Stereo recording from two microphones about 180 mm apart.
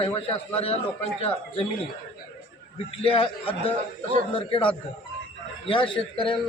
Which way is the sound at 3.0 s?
30° left (ahead or behind).